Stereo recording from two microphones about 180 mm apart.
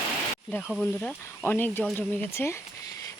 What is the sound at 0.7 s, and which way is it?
Speech, 5° left (ahead or behind).